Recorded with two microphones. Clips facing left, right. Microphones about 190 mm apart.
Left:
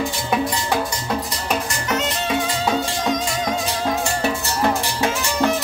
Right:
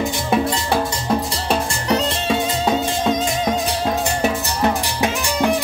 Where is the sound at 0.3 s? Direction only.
25° right (ahead or behind).